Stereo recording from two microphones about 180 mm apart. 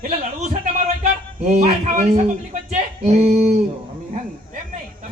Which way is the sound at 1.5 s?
45° right (ahead or behind).